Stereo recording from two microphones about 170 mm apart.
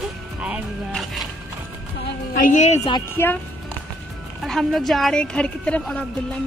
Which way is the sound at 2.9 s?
15° left (ahead or behind).